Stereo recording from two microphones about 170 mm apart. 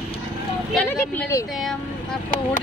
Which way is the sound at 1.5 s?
Centre (ahead or behind).